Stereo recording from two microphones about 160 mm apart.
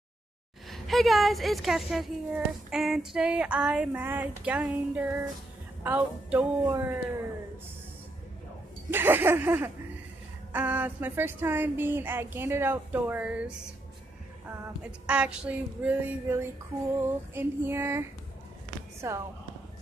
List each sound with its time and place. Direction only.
0.7 s speech: centre (ahead or behind); by 7.0 s 15° right (ahead or behind)
8.9 s speech: 15° right (ahead or behind)
14.9 s speech: 5° right (ahead or behind)